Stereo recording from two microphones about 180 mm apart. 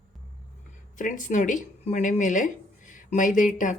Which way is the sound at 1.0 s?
45° left (ahead or behind).